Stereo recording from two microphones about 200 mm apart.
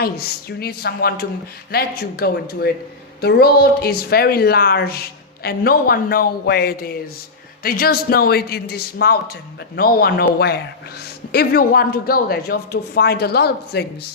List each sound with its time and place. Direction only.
0.0 s speech: 50° left (ahead or behind)